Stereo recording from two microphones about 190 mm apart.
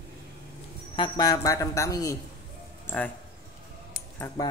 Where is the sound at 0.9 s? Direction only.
25° left (ahead or behind).